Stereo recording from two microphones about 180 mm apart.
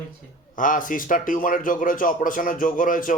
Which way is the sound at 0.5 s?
45° left (ahead or behind).